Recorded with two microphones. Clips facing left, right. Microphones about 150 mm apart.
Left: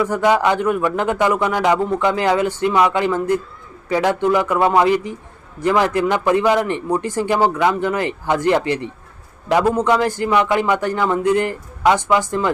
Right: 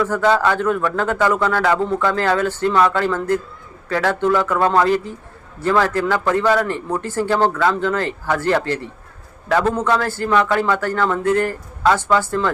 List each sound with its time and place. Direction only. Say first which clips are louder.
0.0 s a man's voice: left 1 dB; 15° left (ahead or behind)